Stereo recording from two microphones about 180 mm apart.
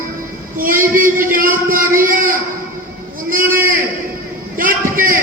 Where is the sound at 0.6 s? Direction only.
50° right (ahead or behind).